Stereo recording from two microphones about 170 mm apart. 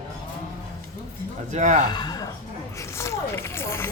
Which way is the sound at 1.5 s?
45° right (ahead or behind).